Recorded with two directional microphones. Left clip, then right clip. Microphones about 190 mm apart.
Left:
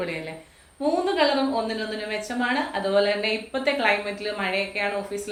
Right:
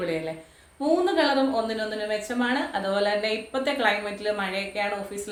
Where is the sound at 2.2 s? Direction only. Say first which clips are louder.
Left 1 dB; 20° right (ahead or behind).